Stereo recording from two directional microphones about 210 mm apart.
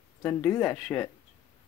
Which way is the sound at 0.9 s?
10° left (ahead or behind).